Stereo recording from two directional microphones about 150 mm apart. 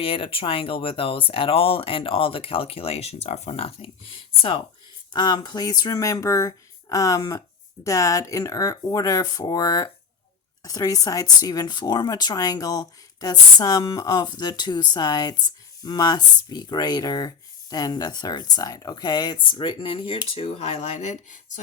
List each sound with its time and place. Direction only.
0.0 s speech: 35° left (ahead or behind); by 21.6 s 50° left (ahead or behind)